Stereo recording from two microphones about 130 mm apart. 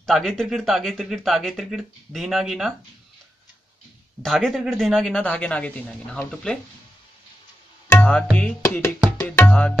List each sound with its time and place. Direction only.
0.0 s speech: 5° left (ahead or behind)
4.2 s speech: 5° left (ahead or behind)
7.9 s tabla: 10° left (ahead or behind)
8.6 s speech: 20° left (ahead or behind)
9.2 s tabla: 10° left (ahead or behind)